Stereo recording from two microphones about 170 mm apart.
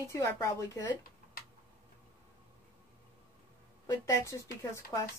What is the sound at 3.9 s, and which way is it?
Speech, 20° left (ahead or behind).